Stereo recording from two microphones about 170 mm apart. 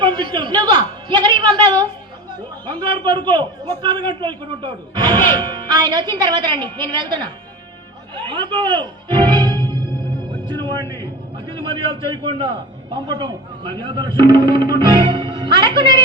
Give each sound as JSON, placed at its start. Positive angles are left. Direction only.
{"t": 0.0, "sound": "a man's voice", "side_deg": -30}
{"t": 8.1, "sound": "music", "side_deg": -30}
{"t": 11.0, "sound": "a man's voice", "side_deg": -30}